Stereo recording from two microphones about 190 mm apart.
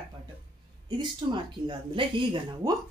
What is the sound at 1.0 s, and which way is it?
Speech, 25° right (ahead or behind).